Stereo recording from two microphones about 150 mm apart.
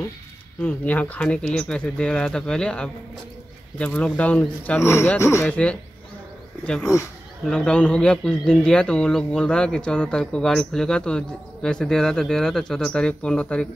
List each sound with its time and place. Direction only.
0.6 s speech: 10° left (ahead or behind)
6.8 s speech: 20° left (ahead or behind)
7.4 s speech: 5° left (ahead or behind)